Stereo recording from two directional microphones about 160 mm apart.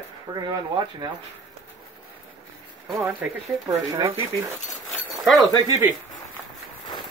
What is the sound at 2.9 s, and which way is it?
Speech, 20° right (ahead or behind).